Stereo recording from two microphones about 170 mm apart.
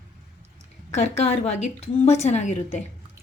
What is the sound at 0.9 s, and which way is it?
A woman's voice, 40° left (ahead or behind).